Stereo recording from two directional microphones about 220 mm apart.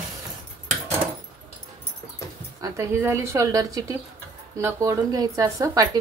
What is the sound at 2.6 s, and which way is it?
A woman's voice, 15° right (ahead or behind).